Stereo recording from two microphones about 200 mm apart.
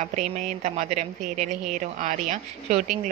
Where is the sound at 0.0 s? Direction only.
40° right (ahead or behind).